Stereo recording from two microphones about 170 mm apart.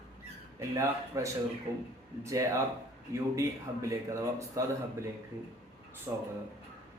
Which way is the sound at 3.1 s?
20° right (ahead or behind).